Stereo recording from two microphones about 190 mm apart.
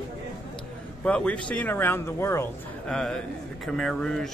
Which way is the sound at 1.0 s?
5° left (ahead or behind).